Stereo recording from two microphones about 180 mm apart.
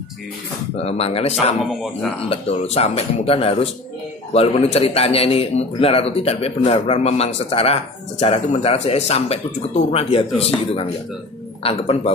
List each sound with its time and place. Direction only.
0.8 s a man's voice: 35° left (ahead or behind)
1.3 s speech: centre (ahead or behind)
2.2 s a man's voice: 30° left (ahead or behind)